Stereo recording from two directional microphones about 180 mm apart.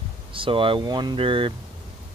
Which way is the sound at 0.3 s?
30° right (ahead or behind).